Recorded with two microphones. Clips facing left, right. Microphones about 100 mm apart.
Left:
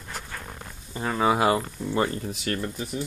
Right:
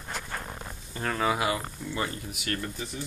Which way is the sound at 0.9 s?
20° left (ahead or behind).